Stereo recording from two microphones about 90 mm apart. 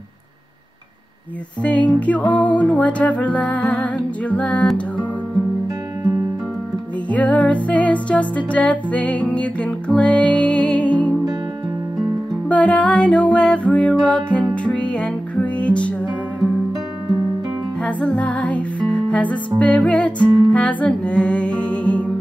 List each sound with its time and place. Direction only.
1.6 s music: 15° left (ahead or behind)
7.1 s music: 15° left (ahead or behind)
12.4 s music: 15° left (ahead or behind)
17.8 s music: 15° left (ahead or behind)